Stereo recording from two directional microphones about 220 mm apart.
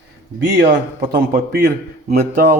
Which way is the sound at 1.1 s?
45° right (ahead or behind).